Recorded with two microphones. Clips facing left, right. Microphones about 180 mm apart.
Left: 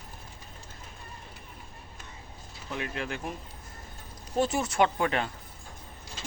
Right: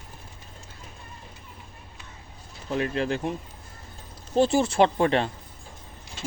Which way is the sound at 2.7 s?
35° right (ahead or behind).